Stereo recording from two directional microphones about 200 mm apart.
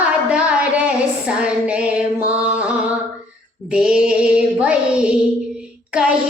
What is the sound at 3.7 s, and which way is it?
Music, 5° right (ahead or behind).